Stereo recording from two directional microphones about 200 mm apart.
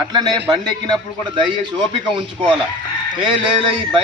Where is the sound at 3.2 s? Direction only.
25° right (ahead or behind).